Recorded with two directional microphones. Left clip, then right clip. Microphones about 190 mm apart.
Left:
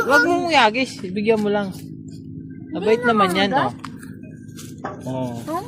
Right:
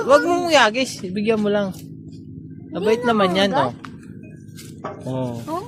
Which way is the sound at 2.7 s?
30° right (ahead or behind).